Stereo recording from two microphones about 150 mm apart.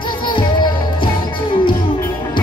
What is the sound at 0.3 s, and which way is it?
Music, 30° left (ahead or behind).